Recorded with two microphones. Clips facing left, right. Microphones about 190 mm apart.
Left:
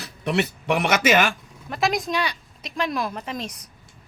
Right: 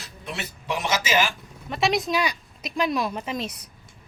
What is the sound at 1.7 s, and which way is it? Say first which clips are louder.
A woman's voice: right 1 dB; centre (ahead or behind).